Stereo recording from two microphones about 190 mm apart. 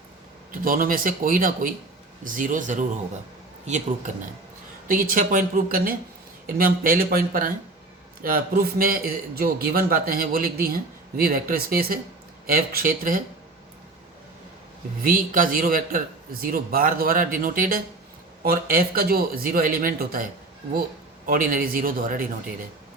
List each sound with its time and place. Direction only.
0.5 s a man's voice: 50° right (ahead or behind)
8.8 s a man's voice: 50° right (ahead or behind)
15.0 s a man's voice: 45° right (ahead or behind)
21.2 s a man's voice: 50° right (ahead or behind)